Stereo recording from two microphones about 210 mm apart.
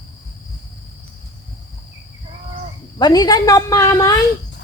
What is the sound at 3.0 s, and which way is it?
A woman's voice, 20° left (ahead or behind).